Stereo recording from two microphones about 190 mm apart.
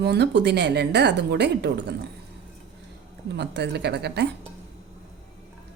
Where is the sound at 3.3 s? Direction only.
60° right (ahead or behind).